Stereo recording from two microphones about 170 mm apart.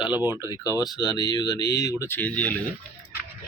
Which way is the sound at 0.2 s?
15° right (ahead or behind).